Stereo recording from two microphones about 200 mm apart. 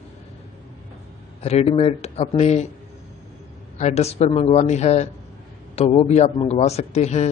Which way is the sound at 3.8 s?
35° left (ahead or behind).